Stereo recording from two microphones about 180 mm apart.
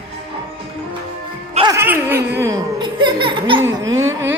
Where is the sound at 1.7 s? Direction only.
10° right (ahead or behind).